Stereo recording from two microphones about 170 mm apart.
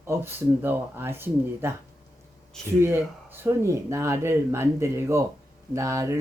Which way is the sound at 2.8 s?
15° right (ahead or behind).